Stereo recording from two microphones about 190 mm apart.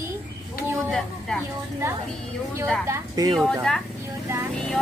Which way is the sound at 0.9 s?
5° left (ahead or behind).